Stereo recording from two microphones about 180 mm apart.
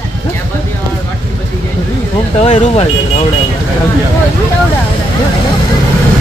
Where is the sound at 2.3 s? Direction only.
40° left (ahead or behind).